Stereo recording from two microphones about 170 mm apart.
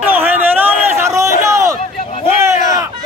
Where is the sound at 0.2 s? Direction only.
10° right (ahead or behind).